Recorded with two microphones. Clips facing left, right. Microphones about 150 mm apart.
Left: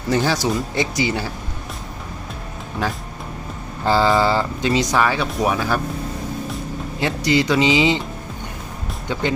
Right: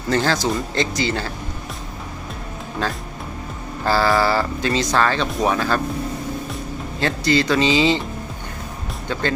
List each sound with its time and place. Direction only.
0.1 s speech: 15° left (ahead or behind)
2.8 s speech: 15° left (ahead or behind)
7.0 s speech: 15° left (ahead or behind)